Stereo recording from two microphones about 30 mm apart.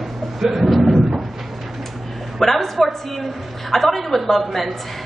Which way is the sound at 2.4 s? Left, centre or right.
Centre.